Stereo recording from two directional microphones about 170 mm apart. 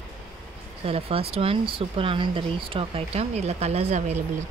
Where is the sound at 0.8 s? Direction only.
35° right (ahead or behind).